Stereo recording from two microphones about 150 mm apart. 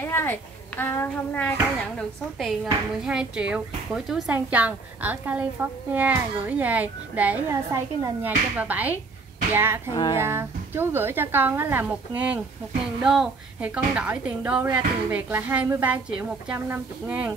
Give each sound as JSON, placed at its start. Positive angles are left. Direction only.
{"t": 0.0, "sound": "speech", "side_deg": 15}
{"t": 2.3, "sound": "speech", "side_deg": 0}
{"t": 7.7, "sound": "a woman's voice", "side_deg": -20}
{"t": 8.5, "sound": "speech", "side_deg": -10}